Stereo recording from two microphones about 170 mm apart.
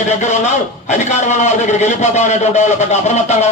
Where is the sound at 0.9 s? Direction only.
45° left (ahead or behind).